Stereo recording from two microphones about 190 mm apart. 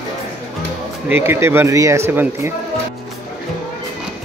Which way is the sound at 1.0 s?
10° right (ahead or behind).